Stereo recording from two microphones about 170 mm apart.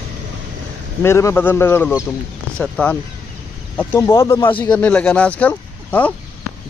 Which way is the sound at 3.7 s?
15° left (ahead or behind).